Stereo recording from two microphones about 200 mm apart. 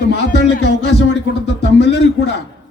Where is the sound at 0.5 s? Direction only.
60° left (ahead or behind).